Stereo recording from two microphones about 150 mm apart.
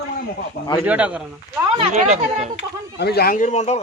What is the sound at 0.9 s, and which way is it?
Speech, 10° right (ahead or behind).